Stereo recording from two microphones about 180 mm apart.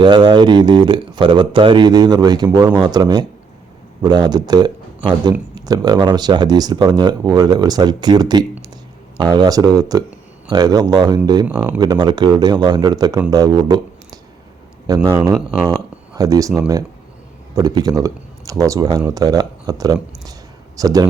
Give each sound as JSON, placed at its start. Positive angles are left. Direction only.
{"t": 0.0, "sound": "speech", "side_deg": -25}